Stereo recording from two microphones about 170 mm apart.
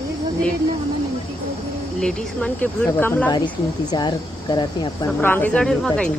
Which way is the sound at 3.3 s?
25° left (ahead or behind).